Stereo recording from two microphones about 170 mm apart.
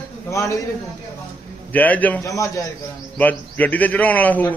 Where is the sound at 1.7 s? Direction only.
10° left (ahead or behind).